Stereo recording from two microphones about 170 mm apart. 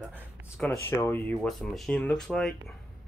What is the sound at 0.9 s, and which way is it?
Speech, 15° left (ahead or behind).